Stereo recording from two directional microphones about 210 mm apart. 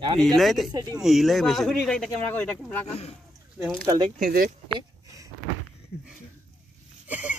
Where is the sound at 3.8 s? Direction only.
20° right (ahead or behind).